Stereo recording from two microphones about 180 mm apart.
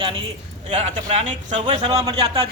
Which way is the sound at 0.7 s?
35° right (ahead or behind).